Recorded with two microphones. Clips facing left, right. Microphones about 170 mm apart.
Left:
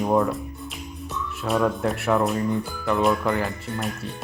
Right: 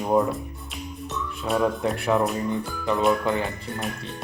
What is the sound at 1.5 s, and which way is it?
Speech, 20° right (ahead or behind).